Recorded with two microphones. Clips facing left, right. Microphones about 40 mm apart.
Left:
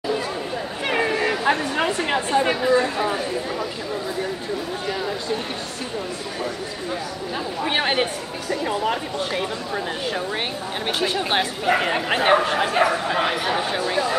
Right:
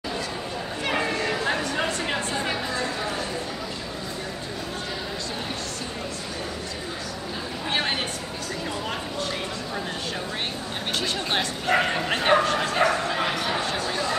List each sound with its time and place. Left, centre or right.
0.8 s a sound: centre
2.5 s speech: centre
7.6 s speech: left
11.0 s speech: centre